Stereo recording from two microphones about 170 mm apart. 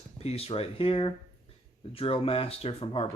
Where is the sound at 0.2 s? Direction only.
35° left (ahead or behind).